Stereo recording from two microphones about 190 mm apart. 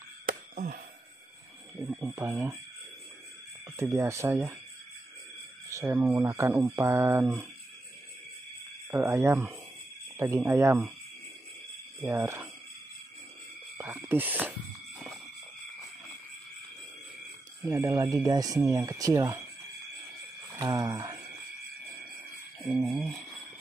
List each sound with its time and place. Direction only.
0.3 s a sound: 45° right (ahead or behind)
2.0 s speech: 10° right (ahead or behind)
3.7 s speech: 15° right (ahead or behind)
5.7 s speech: 15° right (ahead or behind)
8.9 s speech: 15° right (ahead or behind)
12.0 s speech: 15° right (ahead or behind)
13.7 s speech: 10° right (ahead or behind)
17.6 s speech: 15° right (ahead or behind)
20.5 s a sound: 20° right (ahead or behind)
22.6 s speech: 10° right (ahead or behind)